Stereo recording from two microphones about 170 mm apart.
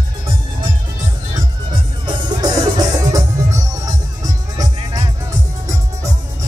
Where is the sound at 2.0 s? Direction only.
20° right (ahead or behind).